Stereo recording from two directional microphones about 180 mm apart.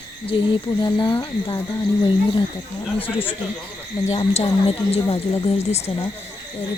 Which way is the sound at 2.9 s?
10° left (ahead or behind).